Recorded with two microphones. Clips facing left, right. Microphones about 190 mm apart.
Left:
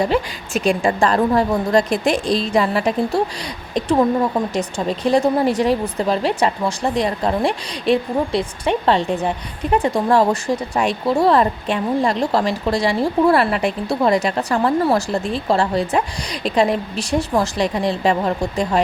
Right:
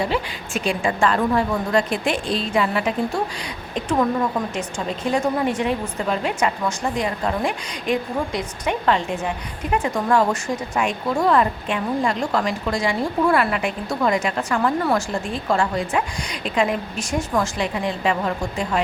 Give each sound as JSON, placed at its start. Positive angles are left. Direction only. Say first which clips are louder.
{"t": 0.0, "sound": "speech", "louder": "left 5 dB", "side_deg": 45}